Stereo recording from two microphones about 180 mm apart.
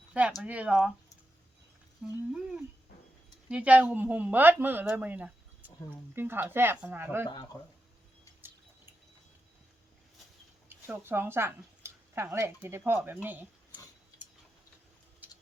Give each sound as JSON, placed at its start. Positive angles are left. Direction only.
{"t": 0.1, "sound": "a woman's voice", "side_deg": -10}
{"t": 2.3, "sound": "a woman's voice", "side_deg": -5}
{"t": 7.3, "sound": "speech", "side_deg": 20}
{"t": 8.4, "sound": "a sound", "side_deg": -10}
{"t": 10.7, "sound": "speech", "side_deg": -10}